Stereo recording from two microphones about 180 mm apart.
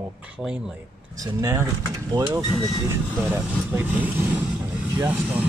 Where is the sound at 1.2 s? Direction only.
20° right (ahead or behind).